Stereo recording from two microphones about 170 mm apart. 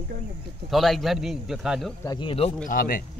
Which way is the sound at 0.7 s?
Centre (ahead or behind).